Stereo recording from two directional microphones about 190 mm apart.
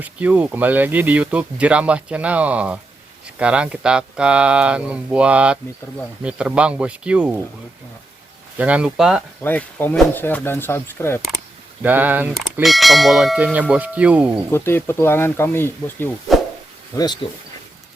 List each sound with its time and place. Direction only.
0.0 s speech: 10° right (ahead or behind)
8.5 s speech: 5° right (ahead or behind)
9.4 s speech: 10° left (ahead or behind)
11.8 s speech: 10° right (ahead or behind)
14.5 s speech: 10° left (ahead or behind)